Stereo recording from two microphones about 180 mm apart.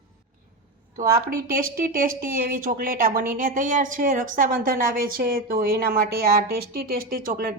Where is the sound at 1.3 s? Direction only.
55° right (ahead or behind).